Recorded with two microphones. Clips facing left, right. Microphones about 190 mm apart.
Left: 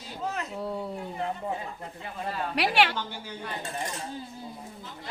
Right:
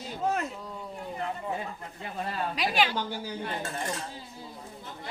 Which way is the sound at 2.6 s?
70° left (ahead or behind).